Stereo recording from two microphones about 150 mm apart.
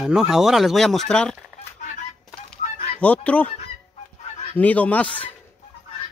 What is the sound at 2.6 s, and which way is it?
Fowl, 45° left (ahead or behind).